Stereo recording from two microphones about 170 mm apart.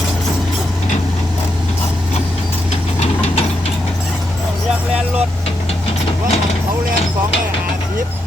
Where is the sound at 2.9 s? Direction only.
35° left (ahead or behind).